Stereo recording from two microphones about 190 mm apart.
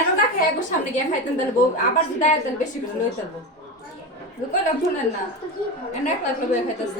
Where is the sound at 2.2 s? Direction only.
40° left (ahead or behind).